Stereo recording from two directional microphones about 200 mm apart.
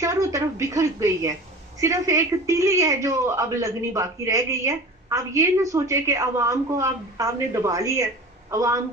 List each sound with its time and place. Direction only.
0.0 s a woman's voice: 15° right (ahead or behind)